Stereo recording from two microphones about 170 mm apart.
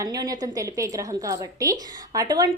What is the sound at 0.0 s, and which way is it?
A woman's voice, 20° right (ahead or behind).